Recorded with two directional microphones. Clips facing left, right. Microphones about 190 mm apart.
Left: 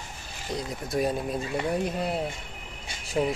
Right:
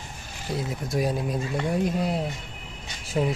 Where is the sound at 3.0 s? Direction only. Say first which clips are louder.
Right 1 dB; centre (ahead or behind).